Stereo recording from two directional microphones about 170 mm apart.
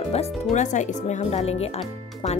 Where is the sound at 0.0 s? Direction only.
35° left (ahead or behind).